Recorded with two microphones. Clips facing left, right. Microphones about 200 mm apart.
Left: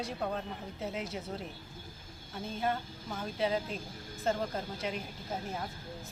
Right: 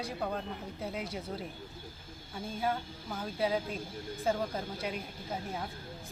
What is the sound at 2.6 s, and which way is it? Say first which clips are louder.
Speech: even; centre (ahead or behind).